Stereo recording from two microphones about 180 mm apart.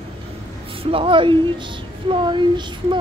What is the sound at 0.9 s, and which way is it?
Speech, 30° right (ahead or behind).